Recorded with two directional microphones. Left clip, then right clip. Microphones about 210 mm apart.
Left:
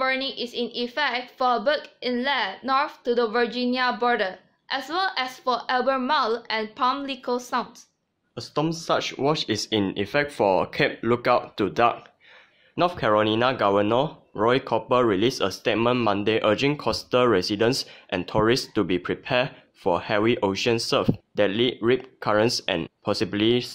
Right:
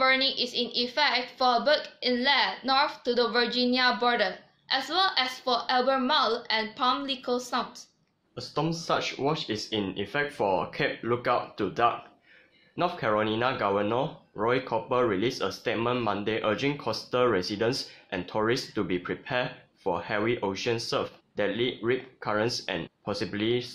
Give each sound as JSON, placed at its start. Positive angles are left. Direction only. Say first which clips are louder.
{"t": 0.0, "sound": "a woman's voice", "louder": "right 1 dB", "side_deg": 35}